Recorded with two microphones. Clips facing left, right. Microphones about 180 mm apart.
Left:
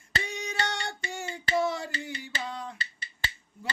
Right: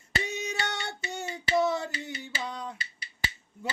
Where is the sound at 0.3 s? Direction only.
20° right (ahead or behind).